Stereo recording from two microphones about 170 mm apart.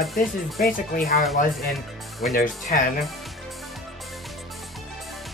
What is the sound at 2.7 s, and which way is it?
Speech, 55° left (ahead or behind).